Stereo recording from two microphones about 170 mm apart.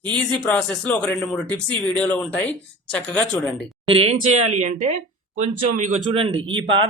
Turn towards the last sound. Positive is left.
turn(degrees=-30)  # may be behind; listen again after turning